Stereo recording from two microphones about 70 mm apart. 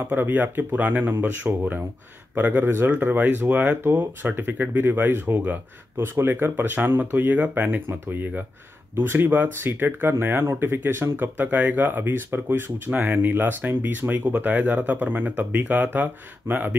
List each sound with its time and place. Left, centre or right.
0.1 s speech: right